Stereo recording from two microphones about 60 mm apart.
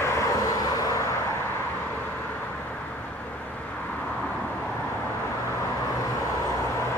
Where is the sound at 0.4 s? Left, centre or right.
Left.